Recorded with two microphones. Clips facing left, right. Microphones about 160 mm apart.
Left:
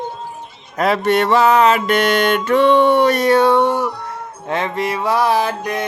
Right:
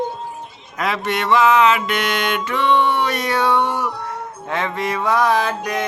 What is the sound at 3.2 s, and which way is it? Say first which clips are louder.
Music: left 6 dB; 30° left (ahead or behind).